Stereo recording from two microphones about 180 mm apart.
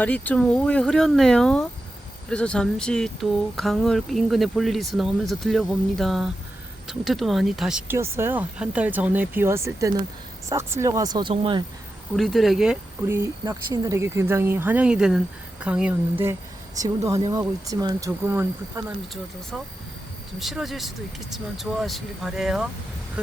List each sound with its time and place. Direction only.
0.0 s speech: 10° left (ahead or behind); by 11.6 s 25° right (ahead or behind)
12.1 s speech: centre (ahead or behind)
13.1 s speech: 15° right (ahead or behind)
20.4 s speech: centre (ahead or behind)